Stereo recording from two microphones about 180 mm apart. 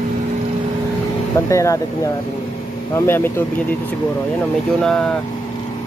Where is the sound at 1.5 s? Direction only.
15° left (ahead or behind).